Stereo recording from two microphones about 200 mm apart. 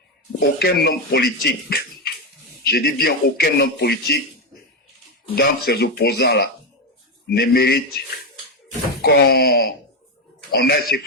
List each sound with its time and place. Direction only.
0.3 s a man's voice: 55° left (ahead or behind)
2.6 s a man's voice: 50° left (ahead or behind)
5.3 s a man's voice: 50° left (ahead or behind)